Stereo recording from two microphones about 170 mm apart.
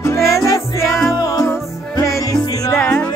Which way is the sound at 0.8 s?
Centre (ahead or behind).